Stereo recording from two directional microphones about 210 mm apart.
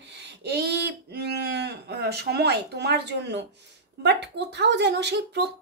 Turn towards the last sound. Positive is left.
turn(degrees=-55)  # may be behind; listen again after turning